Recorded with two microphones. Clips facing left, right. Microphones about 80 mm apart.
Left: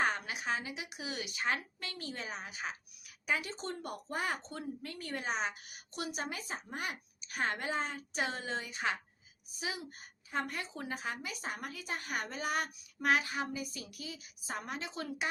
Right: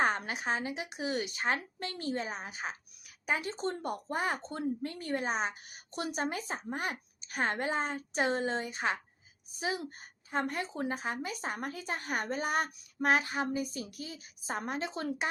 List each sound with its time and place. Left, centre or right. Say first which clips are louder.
0.0 s speech: right 3 dB; right